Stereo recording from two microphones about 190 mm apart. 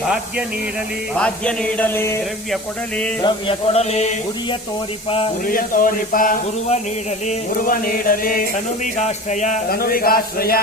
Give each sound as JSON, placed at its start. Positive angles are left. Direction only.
{"t": 1.1, "sound": "speech", "side_deg": 5}
{"t": 3.2, "sound": "a sound", "side_deg": 25}
{"t": 5.5, "sound": "speech", "side_deg": 45}